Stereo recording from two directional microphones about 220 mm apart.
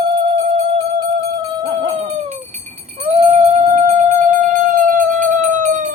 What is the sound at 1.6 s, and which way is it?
Dog, 15° right (ahead or behind).